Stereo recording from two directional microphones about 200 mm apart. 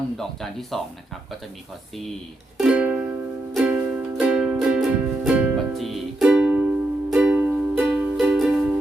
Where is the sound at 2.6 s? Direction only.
5° right (ahead or behind).